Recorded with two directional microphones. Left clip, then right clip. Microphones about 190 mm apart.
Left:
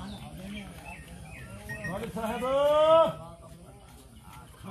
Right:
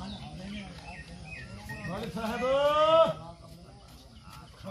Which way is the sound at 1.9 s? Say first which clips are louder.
Left 1 dB; 60° right (ahead or behind).